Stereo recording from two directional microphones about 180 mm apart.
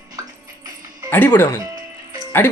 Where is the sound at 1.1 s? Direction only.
10° left (ahead or behind).